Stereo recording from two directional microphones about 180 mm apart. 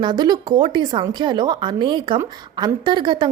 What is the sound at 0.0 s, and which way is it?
A woman's voice, 25° right (ahead or behind).